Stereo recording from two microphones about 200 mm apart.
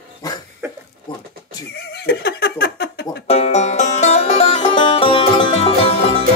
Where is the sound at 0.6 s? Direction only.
10° right (ahead or behind).